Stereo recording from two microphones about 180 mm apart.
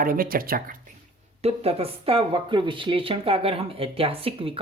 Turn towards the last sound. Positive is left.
turn(degrees=-30)  # may be behind; listen again after turning